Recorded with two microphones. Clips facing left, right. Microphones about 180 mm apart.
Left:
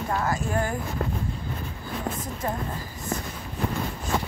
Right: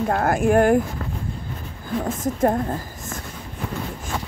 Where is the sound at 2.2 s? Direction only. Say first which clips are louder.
Right 11 dB; 50° right (ahead or behind).